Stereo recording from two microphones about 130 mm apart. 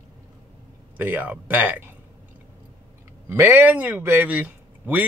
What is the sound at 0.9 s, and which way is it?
Speech, 15° right (ahead or behind).